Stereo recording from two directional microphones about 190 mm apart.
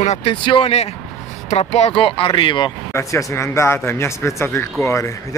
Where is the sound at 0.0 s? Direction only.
35° left (ahead or behind).